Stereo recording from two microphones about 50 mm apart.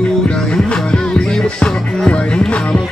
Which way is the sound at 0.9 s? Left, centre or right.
Centre.